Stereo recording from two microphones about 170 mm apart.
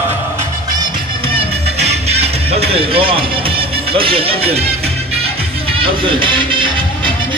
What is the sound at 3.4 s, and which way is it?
Music, 30° right (ahead or behind).